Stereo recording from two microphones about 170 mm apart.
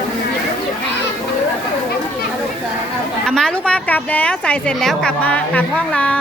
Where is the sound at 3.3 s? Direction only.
5° left (ahead or behind).